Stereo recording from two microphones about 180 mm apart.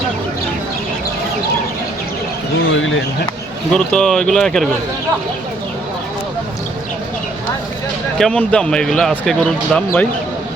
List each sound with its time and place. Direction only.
2.6 s a sound: 90° left
3.7 s speech: 5° left (ahead or behind)
8.2 s speech: 5° left (ahead or behind)